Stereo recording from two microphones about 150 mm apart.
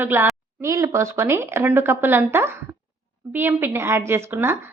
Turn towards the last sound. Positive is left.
turn(degrees=-15)  # may be behind; listen again after turning